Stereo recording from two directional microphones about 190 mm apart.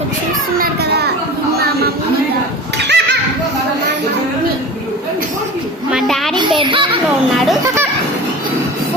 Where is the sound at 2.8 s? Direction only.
65° right (ahead or behind).